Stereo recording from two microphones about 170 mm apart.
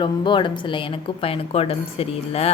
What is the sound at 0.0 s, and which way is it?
A woman's voice, 30° left (ahead or behind).